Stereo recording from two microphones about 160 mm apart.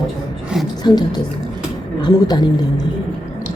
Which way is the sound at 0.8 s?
25° left (ahead or behind).